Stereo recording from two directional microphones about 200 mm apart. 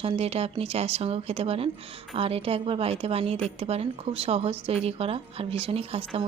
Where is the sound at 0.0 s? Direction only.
30° right (ahead or behind).